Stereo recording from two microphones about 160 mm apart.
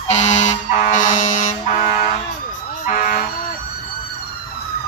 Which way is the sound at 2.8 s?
55° left (ahead or behind).